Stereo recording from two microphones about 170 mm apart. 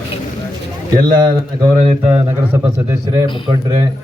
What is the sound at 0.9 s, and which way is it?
Speech, 25° right (ahead or behind).